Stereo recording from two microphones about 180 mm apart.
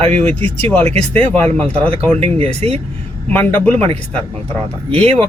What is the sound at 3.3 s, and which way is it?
Speech, 10° left (ahead or behind).